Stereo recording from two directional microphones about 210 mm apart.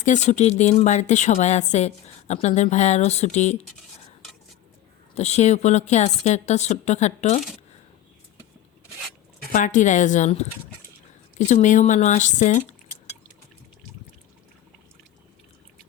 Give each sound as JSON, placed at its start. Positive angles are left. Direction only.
{"t": 0.0, "sound": "a woman's voice", "side_deg": 35}
{"t": 5.1, "sound": "a woman's voice", "side_deg": 30}
{"t": 9.5, "sound": "a woman's voice", "side_deg": 40}